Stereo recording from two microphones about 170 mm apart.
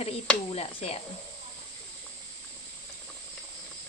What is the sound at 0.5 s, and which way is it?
Speech, 35° left (ahead or behind).